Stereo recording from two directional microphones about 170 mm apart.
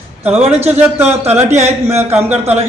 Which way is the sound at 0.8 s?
10° right (ahead or behind).